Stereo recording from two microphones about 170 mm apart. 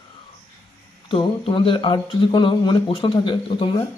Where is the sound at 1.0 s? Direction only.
30° left (ahead or behind).